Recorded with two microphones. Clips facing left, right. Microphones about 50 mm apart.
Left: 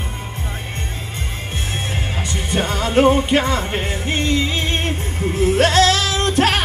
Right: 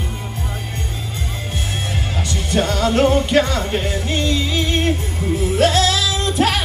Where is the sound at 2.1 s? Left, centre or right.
Left.